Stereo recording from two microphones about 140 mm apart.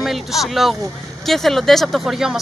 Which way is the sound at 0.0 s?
Centre (ahead or behind).